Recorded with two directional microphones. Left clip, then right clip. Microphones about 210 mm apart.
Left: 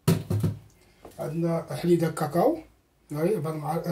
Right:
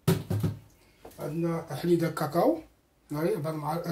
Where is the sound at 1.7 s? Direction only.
15° right (ahead or behind).